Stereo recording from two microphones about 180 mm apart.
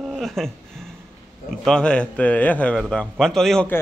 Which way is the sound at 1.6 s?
5° left (ahead or behind).